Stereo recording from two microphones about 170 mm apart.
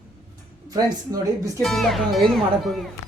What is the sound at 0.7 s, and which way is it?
Speech, 20° right (ahead or behind).